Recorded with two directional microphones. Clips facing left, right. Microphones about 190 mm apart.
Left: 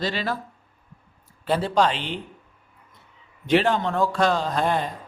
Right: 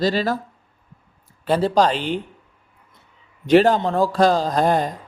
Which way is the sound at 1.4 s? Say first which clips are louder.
Right 4 dB; 40° right (ahead or behind).